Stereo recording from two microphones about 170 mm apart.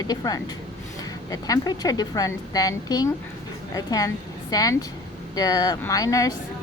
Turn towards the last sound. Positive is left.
turn(degrees=20)  # may be behind; listen again after turning